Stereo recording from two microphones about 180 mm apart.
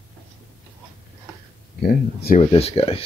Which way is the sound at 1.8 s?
60° left (ahead or behind).